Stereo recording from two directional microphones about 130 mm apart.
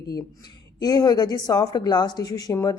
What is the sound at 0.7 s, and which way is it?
Speech, 30° left (ahead or behind).